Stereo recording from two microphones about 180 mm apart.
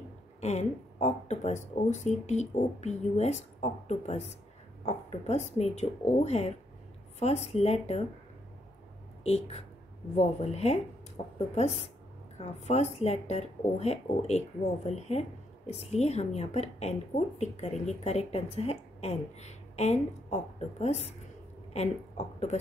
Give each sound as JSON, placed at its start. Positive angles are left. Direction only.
{"t": 0.4, "sound": "speech", "side_deg": 40}
{"t": 9.2, "sound": "a woman's voice", "side_deg": 35}